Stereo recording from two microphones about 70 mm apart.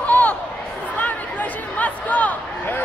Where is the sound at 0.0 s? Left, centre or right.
Left.